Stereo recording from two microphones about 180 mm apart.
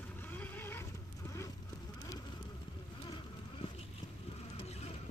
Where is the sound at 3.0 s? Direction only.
30° left (ahead or behind).